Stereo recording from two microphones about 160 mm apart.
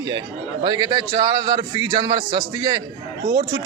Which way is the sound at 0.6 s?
25° right (ahead or behind).